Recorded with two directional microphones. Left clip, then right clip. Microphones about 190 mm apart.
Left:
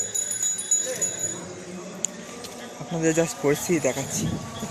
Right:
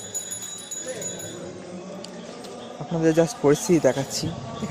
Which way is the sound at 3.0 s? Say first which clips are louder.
Right 3 dB; 10° right (ahead or behind).